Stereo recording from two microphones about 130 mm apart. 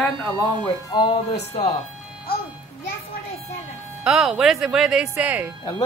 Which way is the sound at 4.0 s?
5° right (ahead or behind).